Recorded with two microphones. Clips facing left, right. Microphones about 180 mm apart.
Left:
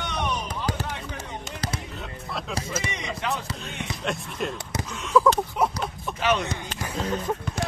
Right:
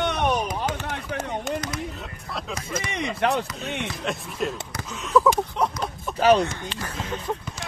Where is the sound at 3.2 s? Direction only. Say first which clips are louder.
Right 7 dB; 60° right (ahead or behind).